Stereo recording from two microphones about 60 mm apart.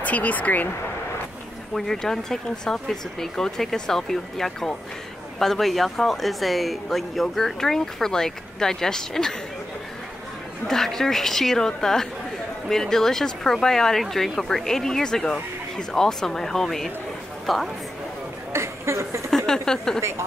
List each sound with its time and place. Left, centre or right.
0.0 s speech: left
1.7 s speech: centre
10.7 s speech: centre
18.5 s a sound: right
19.3 s speech: centre
20.0 s speech: right